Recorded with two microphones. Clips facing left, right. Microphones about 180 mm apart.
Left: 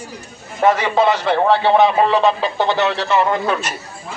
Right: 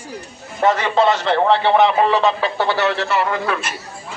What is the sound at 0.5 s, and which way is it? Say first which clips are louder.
Speech: left 1 dB; 10° left (ahead or behind).